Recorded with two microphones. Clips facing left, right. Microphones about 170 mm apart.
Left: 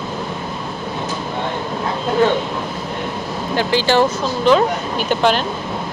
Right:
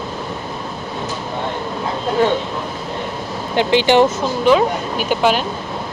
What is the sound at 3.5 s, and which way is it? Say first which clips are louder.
Speech: right 3 dB; 20° right (ahead or behind).